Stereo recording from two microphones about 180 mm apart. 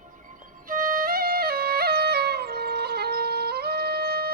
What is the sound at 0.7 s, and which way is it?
Music, 50° right (ahead or behind).